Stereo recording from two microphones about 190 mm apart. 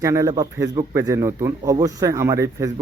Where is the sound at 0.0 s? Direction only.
15° right (ahead or behind).